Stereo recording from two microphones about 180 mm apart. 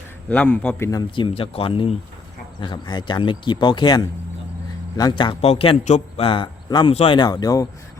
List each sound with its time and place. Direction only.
0.3 s a man's voice: 5° left (ahead or behind)
0.9 s a man's voice: 25° left (ahead or behind)